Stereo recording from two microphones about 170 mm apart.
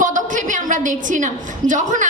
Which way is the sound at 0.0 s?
50° right (ahead or behind).